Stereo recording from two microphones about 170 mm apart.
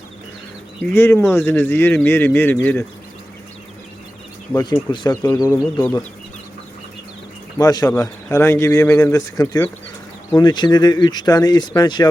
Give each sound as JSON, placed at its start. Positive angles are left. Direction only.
{"t": 0.8, "sound": "speech", "side_deg": 15}
{"t": 4.6, "sound": "speech", "side_deg": 25}
{"t": 5.8, "sound": "speech", "side_deg": 10}
{"t": 7.6, "sound": "speech", "side_deg": 20}